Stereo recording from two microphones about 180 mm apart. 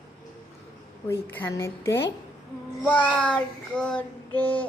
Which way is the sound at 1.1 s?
10° left (ahead or behind).